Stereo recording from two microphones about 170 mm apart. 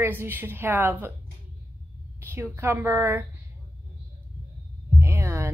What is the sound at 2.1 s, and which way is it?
A woman's voice, 15° right (ahead or behind).